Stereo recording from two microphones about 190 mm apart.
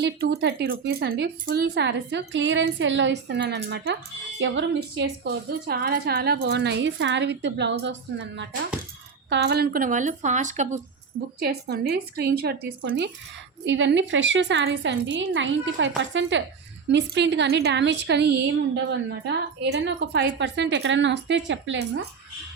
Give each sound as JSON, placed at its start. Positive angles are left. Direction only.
{"t": 0.0, "sound": "a woman's voice", "side_deg": -65}
{"t": 4.4, "sound": "a woman's voice", "side_deg": -75}
{"t": 11.3, "sound": "a woman's voice", "side_deg": -55}
{"t": 13.7, "sound": "a woman's voice", "side_deg": -70}